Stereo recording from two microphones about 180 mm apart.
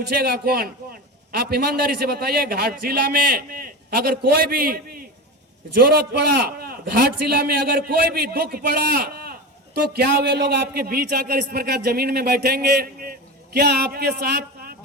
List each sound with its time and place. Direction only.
0.1 s speech: 60° right (ahead or behind)